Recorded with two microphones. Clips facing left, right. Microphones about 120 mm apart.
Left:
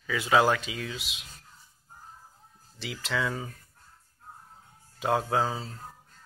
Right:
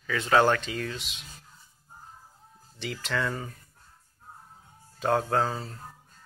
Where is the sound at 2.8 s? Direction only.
5° left (ahead or behind).